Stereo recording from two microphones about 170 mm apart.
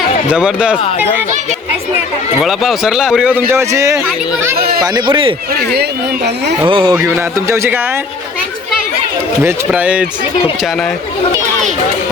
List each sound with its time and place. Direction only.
0.3 s speech: 5° right (ahead or behind)
2.4 s speech: centre (ahead or behind); by 4.0 s 15° right (ahead or behind)
4.5 s speech: 65° right (ahead or behind)
4.8 s speech: 25° right (ahead or behind)
5.5 s speech: 75° right (ahead or behind)
6.7 s speech: 30° right (ahead or behind)
6.9 s speech: 15° right (ahead or behind)
9.4 s speech: 10° right (ahead or behind)